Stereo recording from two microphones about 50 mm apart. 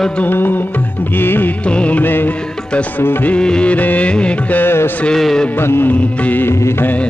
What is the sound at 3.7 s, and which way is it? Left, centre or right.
Music, left.